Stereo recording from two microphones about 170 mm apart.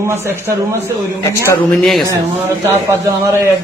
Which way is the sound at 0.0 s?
15° right (ahead or behind).